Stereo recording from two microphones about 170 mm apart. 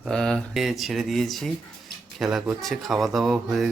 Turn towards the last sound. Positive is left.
turn(degrees=0)  # may be behind; listen again after turning